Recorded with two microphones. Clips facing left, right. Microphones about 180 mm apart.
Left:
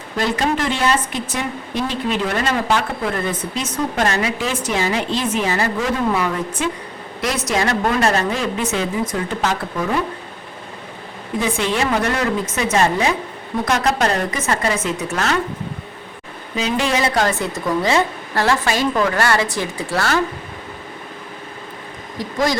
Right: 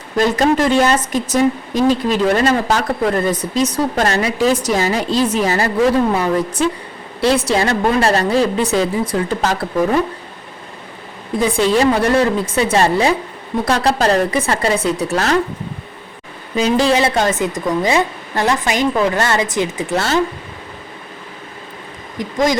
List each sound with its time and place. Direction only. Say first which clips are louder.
0.3 s a woman's voice: right 9 dB; 40° right (ahead or behind)
11.3 s a woman's voice: right 6 dB; 35° right (ahead or behind)
16.6 s a woman's voice: right 5 dB; 35° right (ahead or behind)
22.2 s a woman's voice: right 3 dB; 20° right (ahead or behind)